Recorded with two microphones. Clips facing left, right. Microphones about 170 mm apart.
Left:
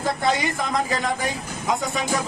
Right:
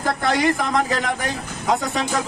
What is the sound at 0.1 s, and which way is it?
Speech, 80° right.